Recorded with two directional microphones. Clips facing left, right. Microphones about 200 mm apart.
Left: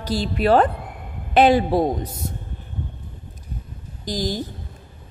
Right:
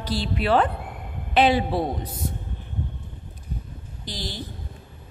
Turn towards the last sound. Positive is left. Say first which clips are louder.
# left 9 dB
turn(degrees=45)  # may be behind; listen again after turning